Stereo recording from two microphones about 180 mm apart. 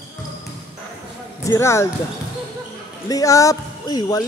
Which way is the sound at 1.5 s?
15° left (ahead or behind).